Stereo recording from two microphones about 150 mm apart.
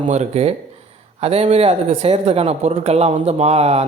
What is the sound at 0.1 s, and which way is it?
Speech, 45° right (ahead or behind).